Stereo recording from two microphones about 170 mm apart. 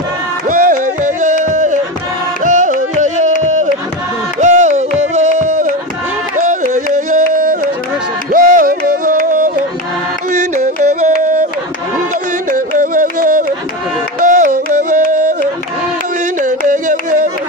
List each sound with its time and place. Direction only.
0.5 s music: 55° right (ahead or behind)
4.4 s music: 45° right (ahead or behind)
6.4 s a sound: 50° right (ahead or behind)
8.3 s music: 55° right (ahead or behind)
12.4 s music: 50° right (ahead or behind)
16.3 s carnatic music: 50° right (ahead or behind)